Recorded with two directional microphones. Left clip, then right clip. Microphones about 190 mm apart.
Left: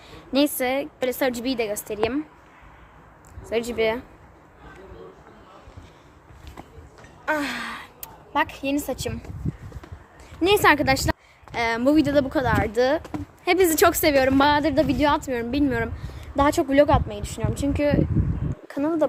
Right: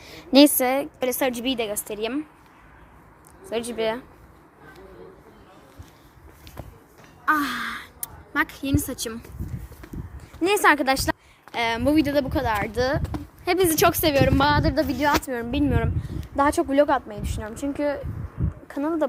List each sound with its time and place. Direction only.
0.0 s a sound: 35° right (ahead or behind)
0.5 s a woman's voice: 15° right (ahead or behind); by 2.2 s centre (ahead or behind)
3.4 s speech: 5° left (ahead or behind)
7.3 s gasp: 10° left (ahead or behind)
8.4 s speech: centre (ahead or behind)
10.4 s a woman's voice: centre (ahead or behind)
13.0 s speech: 35° right (ahead or behind)
13.4 s a woman's voice: 15° left (ahead or behind)
15.3 s a woman's voice: centre (ahead or behind)